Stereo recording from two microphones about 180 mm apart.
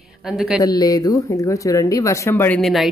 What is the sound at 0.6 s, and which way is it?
Speech, 20° left (ahead or behind).